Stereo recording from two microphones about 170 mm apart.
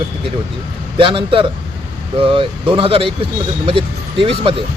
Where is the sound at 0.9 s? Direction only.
30° right (ahead or behind).